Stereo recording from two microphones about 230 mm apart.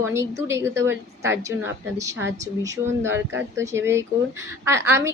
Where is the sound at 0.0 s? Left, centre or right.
Centre.